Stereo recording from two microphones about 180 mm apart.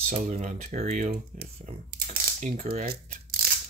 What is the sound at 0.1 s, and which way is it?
Speech, 45° right (ahead or behind).